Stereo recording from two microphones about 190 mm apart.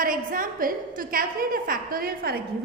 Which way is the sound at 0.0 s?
45° right (ahead or behind).